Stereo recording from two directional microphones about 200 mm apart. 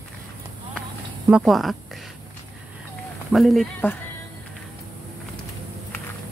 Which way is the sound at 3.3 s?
Centre (ahead or behind).